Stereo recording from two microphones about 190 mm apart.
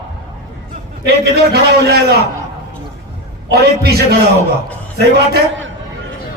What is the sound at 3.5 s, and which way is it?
A man's voice, 55° right (ahead or behind).